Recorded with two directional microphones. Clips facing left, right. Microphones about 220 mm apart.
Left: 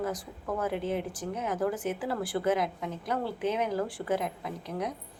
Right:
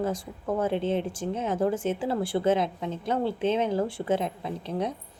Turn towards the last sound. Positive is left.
turn(degrees=-25)  # may be behind; listen again after turning